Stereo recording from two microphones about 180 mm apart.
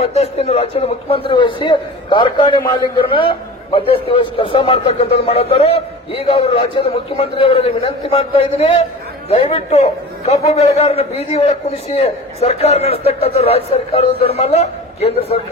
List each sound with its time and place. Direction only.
0.0 s a man's voice: 35° left (ahead or behind)